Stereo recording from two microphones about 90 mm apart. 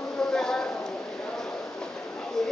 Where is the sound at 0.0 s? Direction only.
5° left (ahead or behind).